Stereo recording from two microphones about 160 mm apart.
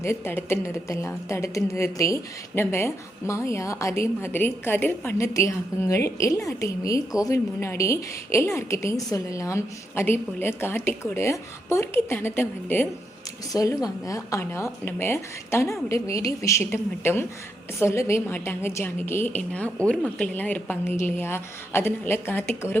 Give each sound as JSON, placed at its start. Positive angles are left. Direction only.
{"t": 0.0, "sound": "a woman's voice", "side_deg": 15}